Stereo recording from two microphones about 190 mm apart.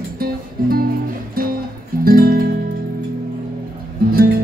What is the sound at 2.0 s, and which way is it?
Music, 50° right (ahead or behind).